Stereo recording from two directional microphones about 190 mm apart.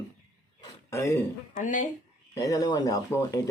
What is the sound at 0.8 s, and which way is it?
Speech, 15° left (ahead or behind).